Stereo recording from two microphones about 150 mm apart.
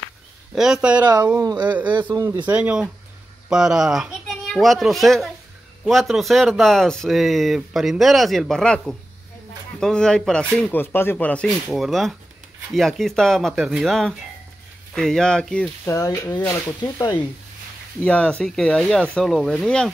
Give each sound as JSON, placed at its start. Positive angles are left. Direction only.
{"t": 0.6, "sound": "speech", "side_deg": -5}
{"t": 1.0, "sound": "a man's voice", "side_deg": -25}
{"t": 2.3, "sound": "a child's voice", "side_deg": -10}
{"t": 15.8, "sound": "speech", "side_deg": 20}
{"t": 18.0, "sound": "speech", "side_deg": 5}